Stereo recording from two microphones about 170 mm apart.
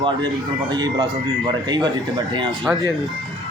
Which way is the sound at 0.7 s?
25° right (ahead or behind).